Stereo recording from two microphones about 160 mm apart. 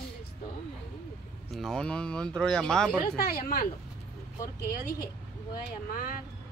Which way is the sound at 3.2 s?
65° left (ahead or behind).